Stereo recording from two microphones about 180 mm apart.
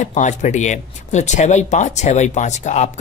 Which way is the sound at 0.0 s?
40° left (ahead or behind).